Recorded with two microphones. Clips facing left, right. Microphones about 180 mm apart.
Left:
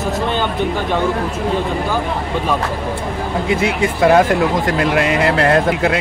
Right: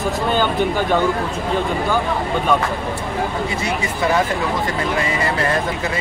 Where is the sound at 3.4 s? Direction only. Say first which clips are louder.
Left 6 dB; 60° left (ahead or behind).